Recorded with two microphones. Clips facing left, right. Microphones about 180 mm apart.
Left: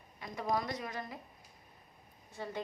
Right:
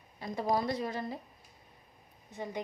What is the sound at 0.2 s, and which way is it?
A woman's voice, 30° right (ahead or behind).